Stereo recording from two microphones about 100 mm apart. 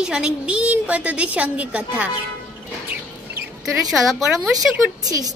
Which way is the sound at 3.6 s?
Centre (ahead or behind).